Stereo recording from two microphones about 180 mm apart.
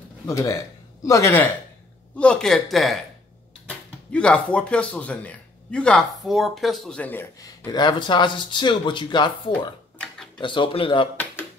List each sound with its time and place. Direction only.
0.3 s speech: 20° left (ahead or behind)
7.6 s speech: 25° left (ahead or behind)
9.9 s tick-tock: 5° left (ahead or behind)
10.4 s speech: 25° left (ahead or behind)